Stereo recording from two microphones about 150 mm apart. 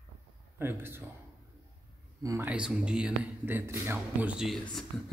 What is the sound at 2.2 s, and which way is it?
Speech, 20° right (ahead or behind).